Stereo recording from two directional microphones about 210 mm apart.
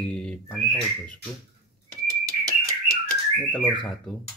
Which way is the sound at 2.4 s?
15° right (ahead or behind).